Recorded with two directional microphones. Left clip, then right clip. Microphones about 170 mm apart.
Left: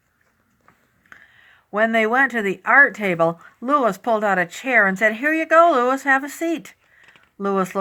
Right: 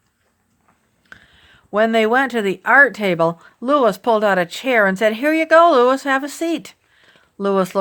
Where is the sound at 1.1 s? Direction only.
50° right (ahead or behind).